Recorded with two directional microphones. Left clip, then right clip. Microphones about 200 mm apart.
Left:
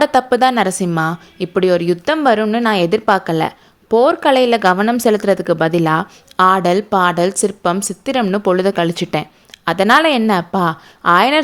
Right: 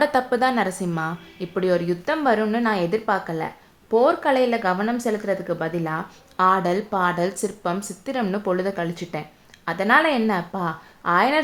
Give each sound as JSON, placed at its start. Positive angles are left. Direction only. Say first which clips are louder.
{"t": 0.0, "sound": "a woman's voice", "louder": "left 7 dB", "side_deg": 35}